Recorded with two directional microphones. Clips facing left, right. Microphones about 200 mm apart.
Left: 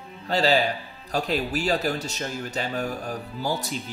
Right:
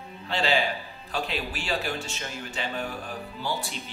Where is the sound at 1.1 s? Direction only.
40° left (ahead or behind).